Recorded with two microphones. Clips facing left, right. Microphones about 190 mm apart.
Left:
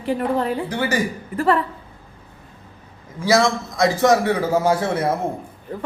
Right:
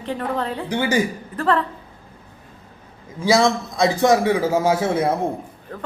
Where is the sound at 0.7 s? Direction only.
15° right (ahead or behind).